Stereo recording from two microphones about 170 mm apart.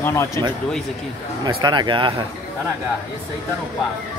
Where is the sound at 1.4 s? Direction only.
25° right (ahead or behind).